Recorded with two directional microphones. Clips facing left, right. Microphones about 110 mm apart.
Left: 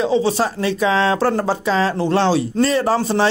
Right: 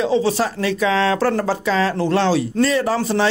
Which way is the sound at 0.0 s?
25° left (ahead or behind).